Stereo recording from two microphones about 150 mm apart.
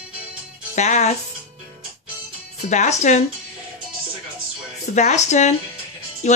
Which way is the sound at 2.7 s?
50° left (ahead or behind).